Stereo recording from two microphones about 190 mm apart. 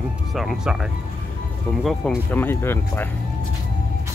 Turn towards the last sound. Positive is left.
turn(degrees=10)  # may be behind; listen again after turning